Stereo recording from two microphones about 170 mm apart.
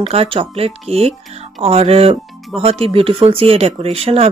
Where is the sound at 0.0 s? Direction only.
35° right (ahead or behind).